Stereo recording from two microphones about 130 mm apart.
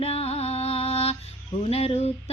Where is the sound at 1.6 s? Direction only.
50° left (ahead or behind).